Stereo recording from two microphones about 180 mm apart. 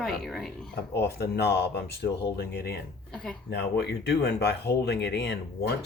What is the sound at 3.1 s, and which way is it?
Speech, 5° left (ahead or behind).